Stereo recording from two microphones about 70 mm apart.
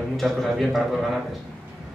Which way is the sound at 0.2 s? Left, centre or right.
Centre.